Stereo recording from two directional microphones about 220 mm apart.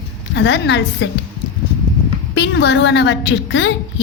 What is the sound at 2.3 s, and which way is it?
A woman's voice, 50° left (ahead or behind).